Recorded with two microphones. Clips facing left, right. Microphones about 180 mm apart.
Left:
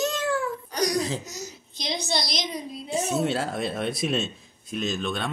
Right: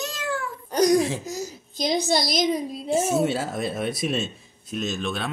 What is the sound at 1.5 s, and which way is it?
Speech, 45° right (ahead or behind).